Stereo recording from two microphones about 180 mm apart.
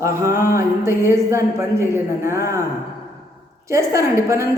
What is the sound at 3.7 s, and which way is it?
Speech, 15° right (ahead or behind).